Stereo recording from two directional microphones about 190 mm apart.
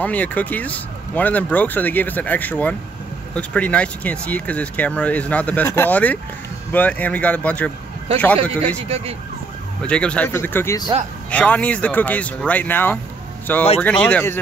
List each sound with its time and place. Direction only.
0.0 s speech: 10° left (ahead or behind)
8.8 s speech: 30° right (ahead or behind)
9.8 s speech: 5° left (ahead or behind)